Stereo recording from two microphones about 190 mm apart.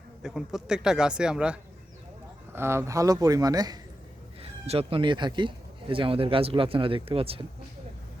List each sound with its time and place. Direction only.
0.2 s speech: 5° right (ahead or behind); by 3.8 s 20° right (ahead or behind)
4.6 s speech: 30° right (ahead or behind)